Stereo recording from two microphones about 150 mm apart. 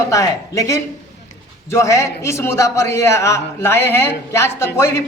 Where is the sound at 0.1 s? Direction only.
20° left (ahead or behind).